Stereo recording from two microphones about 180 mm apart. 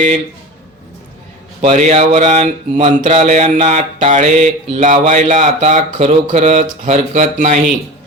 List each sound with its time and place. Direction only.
1.6 s mantra: 40° right (ahead or behind)